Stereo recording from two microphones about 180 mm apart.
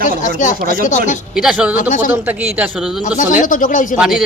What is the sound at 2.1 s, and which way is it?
Speech, 10° right (ahead or behind).